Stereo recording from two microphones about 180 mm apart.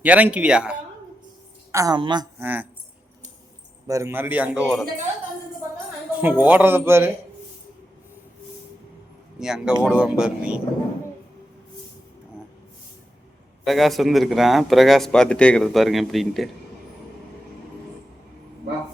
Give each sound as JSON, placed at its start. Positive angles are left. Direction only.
{"t": 0.0, "sound": "speech", "side_deg": -10}
{"t": 1.7, "sound": "a woman's voice", "side_deg": -20}
{"t": 2.4, "sound": "speech", "side_deg": -10}
{"t": 3.8, "sound": "speech", "side_deg": -15}
{"t": 6.1, "sound": "speech", "side_deg": -10}
{"t": 9.4, "sound": "speech", "side_deg": -5}
{"t": 13.7, "sound": "speech", "side_deg": 0}